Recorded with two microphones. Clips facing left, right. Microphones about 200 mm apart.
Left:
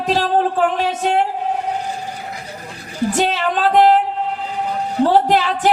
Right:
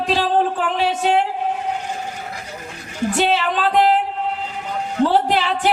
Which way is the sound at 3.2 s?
45° left (ahead or behind).